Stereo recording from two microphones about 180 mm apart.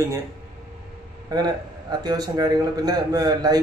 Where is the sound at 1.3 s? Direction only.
20° right (ahead or behind).